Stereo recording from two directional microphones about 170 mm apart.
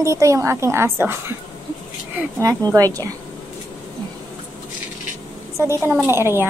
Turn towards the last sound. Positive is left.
turn(degrees=-15)  # may be behind; listen again after turning